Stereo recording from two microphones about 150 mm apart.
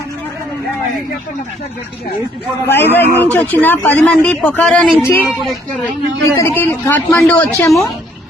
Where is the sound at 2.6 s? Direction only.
15° left (ahead or behind).